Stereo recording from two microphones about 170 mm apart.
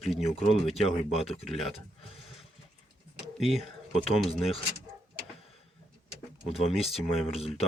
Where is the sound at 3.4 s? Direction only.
Centre (ahead or behind).